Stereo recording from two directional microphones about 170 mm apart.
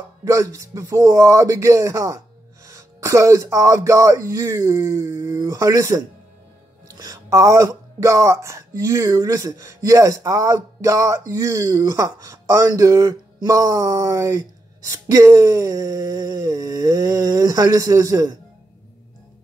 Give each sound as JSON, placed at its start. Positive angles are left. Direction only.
{"t": 0.2, "sound": "speech", "side_deg": -20}